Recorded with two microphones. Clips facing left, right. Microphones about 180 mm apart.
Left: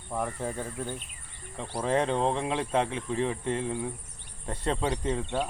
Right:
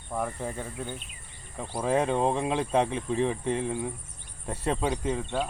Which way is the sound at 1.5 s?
10° right (ahead or behind).